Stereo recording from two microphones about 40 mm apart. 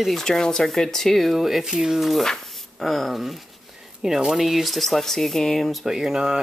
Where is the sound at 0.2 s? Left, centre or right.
Centre.